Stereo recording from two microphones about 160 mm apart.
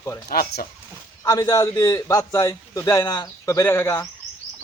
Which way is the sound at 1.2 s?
20° left (ahead or behind).